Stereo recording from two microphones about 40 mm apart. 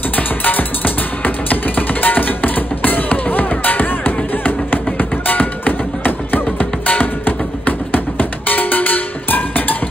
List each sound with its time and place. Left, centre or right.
0.1 s music: left